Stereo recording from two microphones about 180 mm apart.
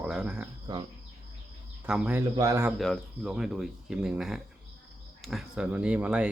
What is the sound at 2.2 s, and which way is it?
Speech, 20° right (ahead or behind).